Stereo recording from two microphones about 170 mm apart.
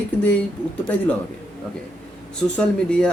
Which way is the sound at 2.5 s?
5° left (ahead or behind).